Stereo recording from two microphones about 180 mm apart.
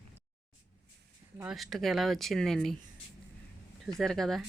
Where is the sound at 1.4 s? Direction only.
Centre (ahead or behind).